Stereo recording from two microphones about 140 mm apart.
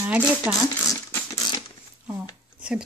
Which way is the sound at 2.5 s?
5° right (ahead or behind).